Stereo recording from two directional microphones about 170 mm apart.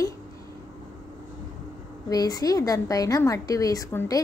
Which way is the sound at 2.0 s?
20° left (ahead or behind).